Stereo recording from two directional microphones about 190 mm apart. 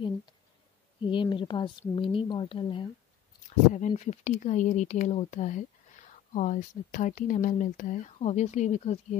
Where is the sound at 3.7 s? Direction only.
40° left (ahead or behind).